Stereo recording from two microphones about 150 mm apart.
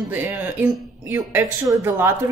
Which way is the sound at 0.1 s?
15° right (ahead or behind).